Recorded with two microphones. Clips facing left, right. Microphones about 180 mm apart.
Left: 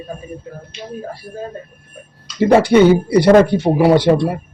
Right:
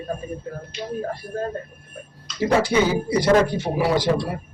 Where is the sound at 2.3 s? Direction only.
60° left (ahead or behind).